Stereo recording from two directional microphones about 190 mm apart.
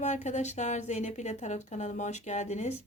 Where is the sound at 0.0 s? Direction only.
40° left (ahead or behind).